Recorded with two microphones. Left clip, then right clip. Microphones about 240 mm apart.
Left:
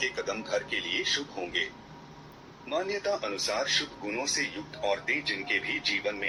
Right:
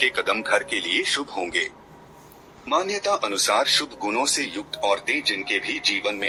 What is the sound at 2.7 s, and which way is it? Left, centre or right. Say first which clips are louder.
Speech: right 8 dB; right.